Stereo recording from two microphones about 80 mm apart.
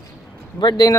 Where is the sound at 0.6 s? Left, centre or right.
Left.